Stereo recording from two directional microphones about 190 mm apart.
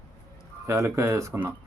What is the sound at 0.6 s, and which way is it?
Speech, 15° right (ahead or behind).